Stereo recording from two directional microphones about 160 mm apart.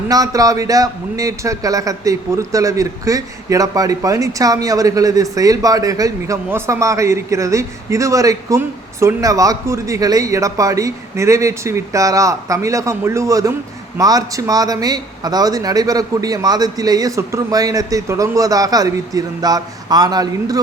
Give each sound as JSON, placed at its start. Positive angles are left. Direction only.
{"t": 0.1, "sound": "a man's voice", "side_deg": -20}